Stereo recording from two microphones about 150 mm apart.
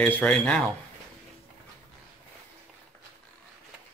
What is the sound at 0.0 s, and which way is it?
Speech, 10° left (ahead or behind).